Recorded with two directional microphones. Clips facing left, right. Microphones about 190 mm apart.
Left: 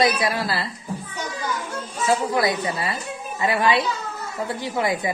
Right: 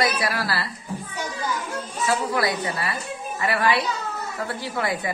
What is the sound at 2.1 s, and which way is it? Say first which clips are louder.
Speech: left 3 dB; 20° left (ahead or behind).